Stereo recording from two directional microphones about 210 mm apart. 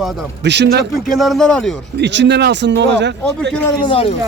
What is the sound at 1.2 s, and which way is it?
Speech, centre (ahead or behind).